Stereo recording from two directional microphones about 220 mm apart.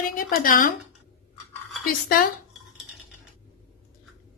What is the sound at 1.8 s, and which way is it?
Speech, 40° left (ahead or behind).